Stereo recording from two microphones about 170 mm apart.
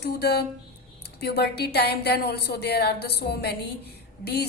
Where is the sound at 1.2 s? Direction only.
70° left (ahead or behind).